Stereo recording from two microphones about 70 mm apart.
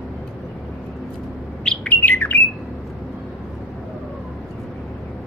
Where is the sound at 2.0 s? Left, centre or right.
Left.